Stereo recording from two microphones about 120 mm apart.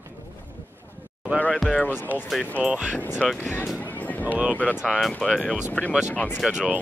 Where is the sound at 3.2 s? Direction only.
5° left (ahead or behind).